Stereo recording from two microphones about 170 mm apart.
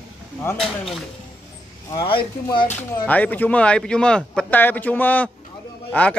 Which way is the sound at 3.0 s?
10° left (ahead or behind).